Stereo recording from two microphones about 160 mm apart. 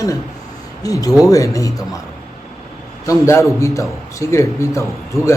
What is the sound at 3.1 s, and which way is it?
A man's voice, 20° left (ahead or behind).